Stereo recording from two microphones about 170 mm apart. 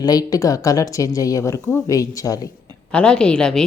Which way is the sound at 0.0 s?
20° left (ahead or behind).